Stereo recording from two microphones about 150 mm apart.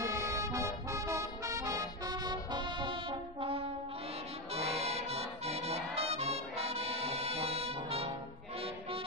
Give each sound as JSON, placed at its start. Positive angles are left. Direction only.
{"t": 0.0, "sound": "music", "side_deg": -20}